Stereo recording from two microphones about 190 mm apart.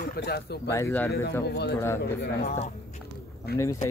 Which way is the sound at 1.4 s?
55° left (ahead or behind).